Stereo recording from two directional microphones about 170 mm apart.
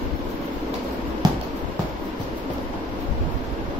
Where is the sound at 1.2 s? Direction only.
25° right (ahead or behind).